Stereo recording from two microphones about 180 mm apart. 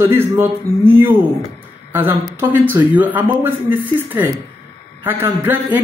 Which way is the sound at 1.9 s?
15° right (ahead or behind).